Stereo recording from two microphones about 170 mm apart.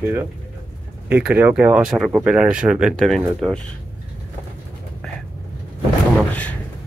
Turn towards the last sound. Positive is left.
turn(degrees=10)  # may be behind; listen again after turning